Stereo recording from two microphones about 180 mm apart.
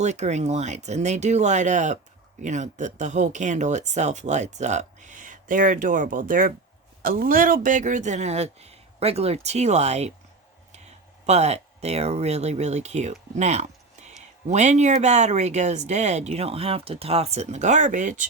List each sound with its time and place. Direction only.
0.0 s speech: 40° right (ahead or behind)
11.3 s speech: 35° right (ahead or behind)